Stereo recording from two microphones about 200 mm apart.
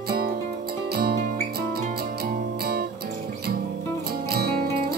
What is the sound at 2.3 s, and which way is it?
Music, 50° right (ahead or behind).